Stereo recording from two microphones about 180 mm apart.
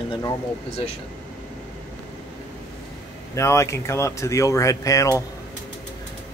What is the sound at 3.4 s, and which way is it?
Speech, 15° left (ahead or behind).